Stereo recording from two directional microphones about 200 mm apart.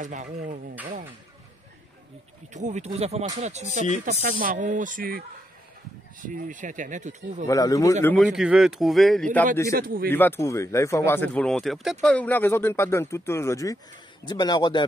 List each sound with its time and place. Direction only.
0.0 s speech: 35° right (ahead or behind)
2.5 s speech: 35° right (ahead or behind)
6.2 s speech: 40° right (ahead or behind)
7.4 s speech: 15° left (ahead or behind)
8.2 s speech: 5° right (ahead or behind)
9.8 s speech: 45° right (ahead or behind)
10.0 s a man's voice: 10° left (ahead or behind)